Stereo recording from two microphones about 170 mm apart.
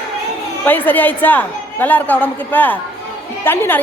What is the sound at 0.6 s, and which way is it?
A woman's voice, 10° left (ahead or behind).